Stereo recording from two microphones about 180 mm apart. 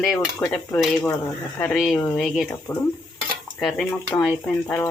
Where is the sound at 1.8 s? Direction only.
Centre (ahead or behind).